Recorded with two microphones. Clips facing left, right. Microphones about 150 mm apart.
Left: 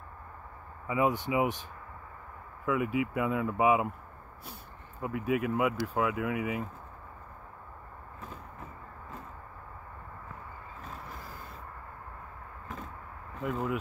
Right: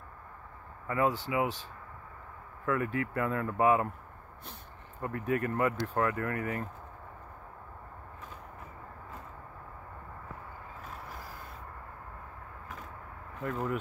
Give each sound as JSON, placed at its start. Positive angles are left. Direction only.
{"t": 0.8, "sound": "speech", "side_deg": 15}
{"t": 2.6, "sound": "speech", "side_deg": 10}
{"t": 5.0, "sound": "speech", "side_deg": 5}
{"t": 13.4, "sound": "speech", "side_deg": 5}